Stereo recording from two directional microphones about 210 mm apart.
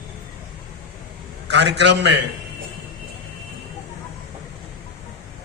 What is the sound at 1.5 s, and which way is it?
Speech, 55° right (ahead or behind).